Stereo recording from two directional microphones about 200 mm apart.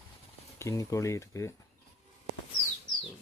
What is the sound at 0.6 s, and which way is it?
Speech, 15° left (ahead or behind).